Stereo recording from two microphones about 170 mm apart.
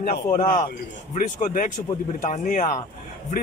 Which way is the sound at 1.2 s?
50° left (ahead or behind).